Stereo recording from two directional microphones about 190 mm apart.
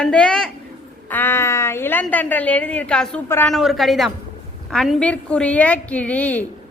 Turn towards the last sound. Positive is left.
turn(degrees=5)  # may be behind; listen again after turning